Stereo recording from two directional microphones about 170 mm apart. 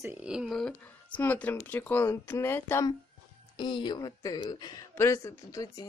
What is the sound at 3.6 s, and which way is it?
A woman's voice, 25° left (ahead or behind).